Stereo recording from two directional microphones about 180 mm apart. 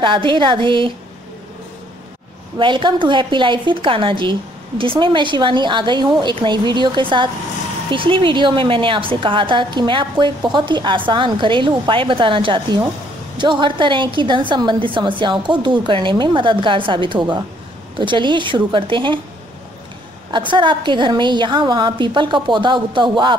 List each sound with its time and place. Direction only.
0.0 s a woman's voice: 25° right (ahead or behind)
2.6 s a woman's voice: 25° right (ahead or behind)
20.3 s a woman's voice: 25° right (ahead or behind)